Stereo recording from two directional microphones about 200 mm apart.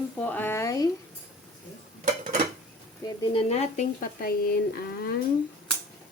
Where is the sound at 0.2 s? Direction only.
10° left (ahead or behind).